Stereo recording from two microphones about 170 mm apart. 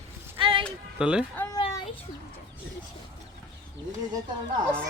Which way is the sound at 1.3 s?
10° left (ahead or behind).